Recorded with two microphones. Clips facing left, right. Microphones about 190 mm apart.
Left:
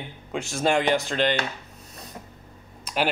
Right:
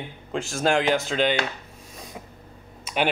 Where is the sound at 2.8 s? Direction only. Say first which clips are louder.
Right 1 dB; centre (ahead or behind).